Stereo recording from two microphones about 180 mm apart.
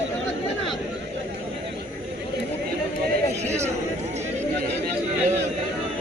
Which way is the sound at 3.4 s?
40° right (ahead or behind).